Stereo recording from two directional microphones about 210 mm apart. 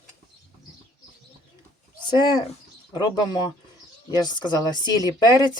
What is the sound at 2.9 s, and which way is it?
Speech, 20° left (ahead or behind).